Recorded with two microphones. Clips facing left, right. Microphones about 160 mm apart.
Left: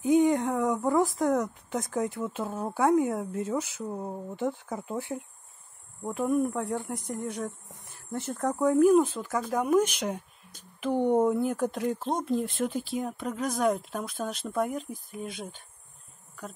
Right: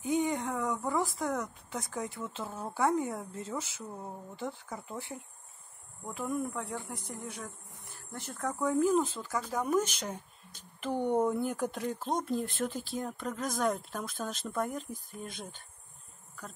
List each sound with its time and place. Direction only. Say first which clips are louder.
0.0 s speech: left 8 dB; 15° left (ahead or behind)
7.6 s speech: left 2 dB; 65° left (ahead or behind)
8.4 s speech: left 6 dB; 15° left (ahead or behind)
11.1 s speech: left 5 dB; centre (ahead or behind)